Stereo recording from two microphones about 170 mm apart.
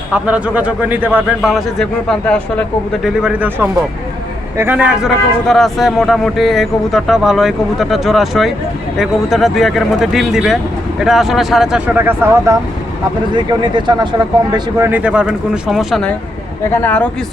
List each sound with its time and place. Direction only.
0.1 s a man's voice: 10° right (ahead or behind)
1.4 s a man's voice: centre (ahead or behind)
3.2 s a man's voice: 5° right (ahead or behind)
13.3 s speech: 25° right (ahead or behind)
14.5 s a man's voice: 15° right (ahead or behind); by 17.1 s 10° left (ahead or behind)